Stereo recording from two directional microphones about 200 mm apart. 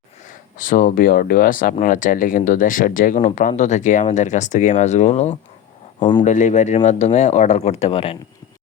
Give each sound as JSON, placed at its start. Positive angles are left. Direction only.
{"t": 0.6, "sound": "speech", "side_deg": 45}
{"t": 6.0, "sound": "speech", "side_deg": 20}
{"t": 6.2, "sound": "speech", "side_deg": 35}